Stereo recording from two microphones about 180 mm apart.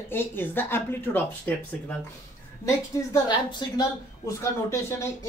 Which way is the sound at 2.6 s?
20° left (ahead or behind).